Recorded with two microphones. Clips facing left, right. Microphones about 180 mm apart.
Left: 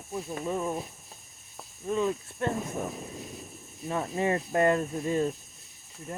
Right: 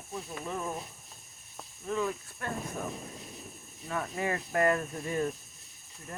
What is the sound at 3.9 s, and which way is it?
Mechanisms, 25° left (ahead or behind).